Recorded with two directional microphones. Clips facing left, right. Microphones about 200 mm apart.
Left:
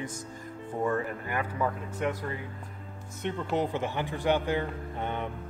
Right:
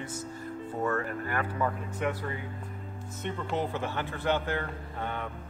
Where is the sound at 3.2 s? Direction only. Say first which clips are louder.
Left 3 dB; 15° left (ahead or behind).